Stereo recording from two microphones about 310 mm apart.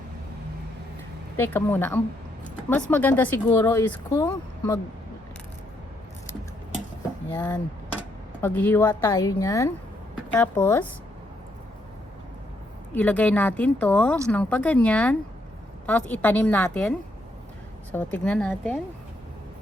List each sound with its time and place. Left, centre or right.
1.4 s speech: centre
7.3 s speech: centre
12.9 s speech: centre
17.9 s speech: centre